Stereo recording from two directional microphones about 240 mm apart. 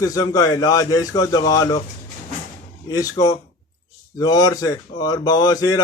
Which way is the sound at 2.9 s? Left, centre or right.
Centre.